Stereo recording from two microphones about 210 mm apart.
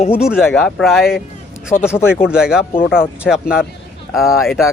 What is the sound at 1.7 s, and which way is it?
Speech, 35° left (ahead or behind).